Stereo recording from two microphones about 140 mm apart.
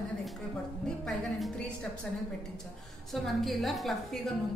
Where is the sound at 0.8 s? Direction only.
5° left (ahead or behind).